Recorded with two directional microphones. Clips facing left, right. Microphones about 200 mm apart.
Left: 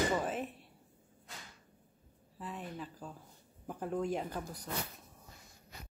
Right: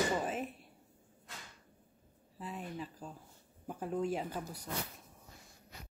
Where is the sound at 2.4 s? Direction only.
10° right (ahead or behind).